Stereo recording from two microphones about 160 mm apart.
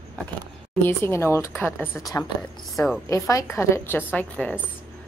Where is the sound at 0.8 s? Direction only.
15° left (ahead or behind).